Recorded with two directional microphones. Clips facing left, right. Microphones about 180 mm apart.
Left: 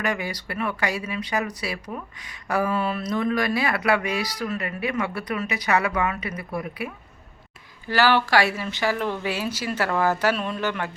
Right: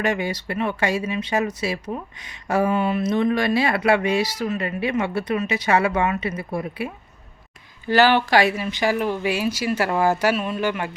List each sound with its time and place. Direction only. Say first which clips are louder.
0.0 s speech: right 4 dB; 25° right (ahead or behind)